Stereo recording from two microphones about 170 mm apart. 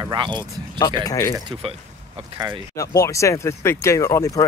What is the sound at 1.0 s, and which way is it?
Speech, 20° left (ahead or behind).